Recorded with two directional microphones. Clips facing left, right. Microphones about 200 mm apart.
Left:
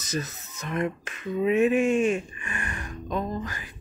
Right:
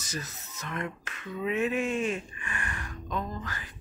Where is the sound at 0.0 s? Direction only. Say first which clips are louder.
Left 7 dB; 20° left (ahead or behind).